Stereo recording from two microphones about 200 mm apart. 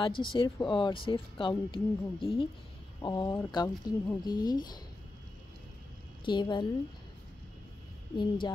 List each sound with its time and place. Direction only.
0.0 s speech: 25° left (ahead or behind)
6.2 s speech: 20° left (ahead or behind)
8.2 s speech: 20° left (ahead or behind)